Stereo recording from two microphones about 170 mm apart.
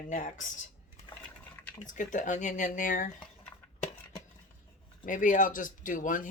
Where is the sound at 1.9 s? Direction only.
50° left (ahead or behind).